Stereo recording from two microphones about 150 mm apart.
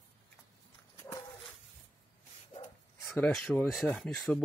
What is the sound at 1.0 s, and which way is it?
Dog, 20° left (ahead or behind).